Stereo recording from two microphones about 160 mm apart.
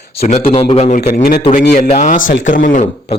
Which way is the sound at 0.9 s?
75° left (ahead or behind).